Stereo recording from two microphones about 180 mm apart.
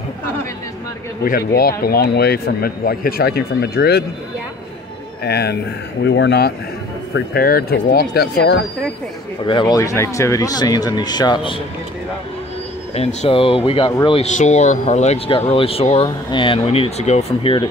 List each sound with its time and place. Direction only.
1.2 s speech: 55° left (ahead or behind)
5.2 s speech: 65° left (ahead or behind)
6.0 s speech: 80° left
7.2 s speech: 55° left (ahead or behind)
9.5 s speech: 25° left (ahead or behind)
12.9 s speech: 35° left (ahead or behind)
14.2 s speech: 40° left (ahead or behind)